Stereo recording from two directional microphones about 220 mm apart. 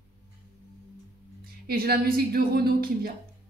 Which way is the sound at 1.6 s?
45° right (ahead or behind).